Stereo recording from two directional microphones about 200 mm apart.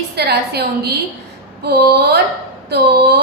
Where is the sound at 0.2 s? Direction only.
55° right (ahead or behind).